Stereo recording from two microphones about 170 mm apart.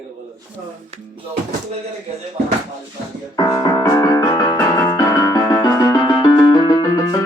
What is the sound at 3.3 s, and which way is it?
Keyboard, 20° left (ahead or behind).